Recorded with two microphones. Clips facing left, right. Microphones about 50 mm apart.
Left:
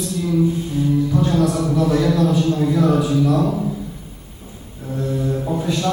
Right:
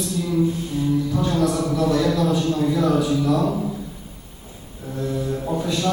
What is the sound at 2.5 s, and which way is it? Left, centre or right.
Speech, centre.